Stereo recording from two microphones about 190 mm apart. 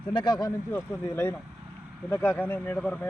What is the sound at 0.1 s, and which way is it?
Speech, 25° left (ahead or behind).